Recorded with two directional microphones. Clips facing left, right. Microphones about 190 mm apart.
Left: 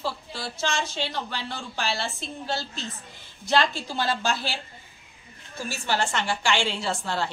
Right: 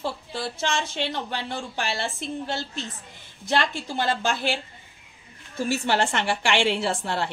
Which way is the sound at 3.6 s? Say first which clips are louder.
Even; 55° right (ahead or behind).